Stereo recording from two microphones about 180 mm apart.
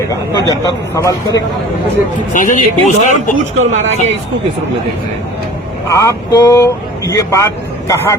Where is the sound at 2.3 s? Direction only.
45° left (ahead or behind).